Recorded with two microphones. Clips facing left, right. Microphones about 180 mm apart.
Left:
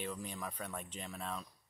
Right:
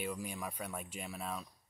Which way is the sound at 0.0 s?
10° right (ahead or behind).